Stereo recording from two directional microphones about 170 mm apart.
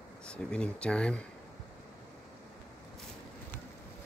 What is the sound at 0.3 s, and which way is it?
Speech, 5° left (ahead or behind).